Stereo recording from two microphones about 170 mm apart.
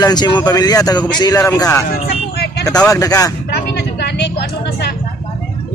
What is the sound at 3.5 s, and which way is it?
Vehicle, 75° left (ahead or behind).